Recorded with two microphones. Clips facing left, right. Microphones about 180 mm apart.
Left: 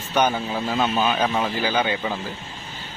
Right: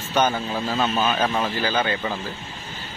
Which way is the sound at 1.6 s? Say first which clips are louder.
Left 1 dB; 10° left (ahead or behind).